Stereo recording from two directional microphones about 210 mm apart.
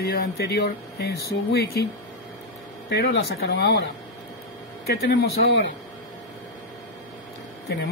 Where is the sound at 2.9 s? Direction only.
50° left (ahead or behind).